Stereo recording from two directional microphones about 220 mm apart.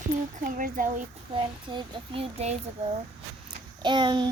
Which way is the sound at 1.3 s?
25° right (ahead or behind).